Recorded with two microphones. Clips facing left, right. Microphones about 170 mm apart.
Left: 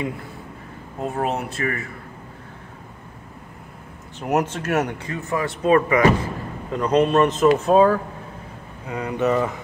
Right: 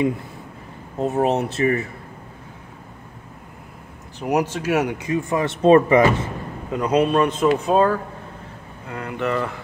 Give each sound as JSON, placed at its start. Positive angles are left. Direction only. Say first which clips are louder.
{"t": 0.9, "sound": "speech", "louder": "right 5 dB", "side_deg": -20}
{"t": 4.2, "sound": "a man's voice", "louder": "right 1 dB", "side_deg": 0}
{"t": 5.0, "sound": "speech", "louder": "right 4 dB", "side_deg": -20}
{"t": 6.7, "sound": "a man's voice", "louder": "even", "side_deg": -5}
{"t": 8.8, "sound": "speech", "louder": "left 4 dB", "side_deg": 15}